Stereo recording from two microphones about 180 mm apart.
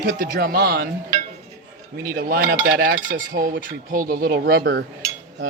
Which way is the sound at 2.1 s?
55° right (ahead or behind).